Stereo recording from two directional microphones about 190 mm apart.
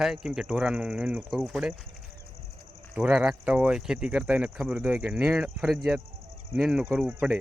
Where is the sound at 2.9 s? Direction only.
5° right (ahead or behind).